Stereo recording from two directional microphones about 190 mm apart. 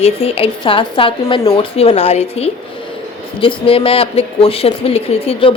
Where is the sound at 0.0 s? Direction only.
30° left (ahead or behind).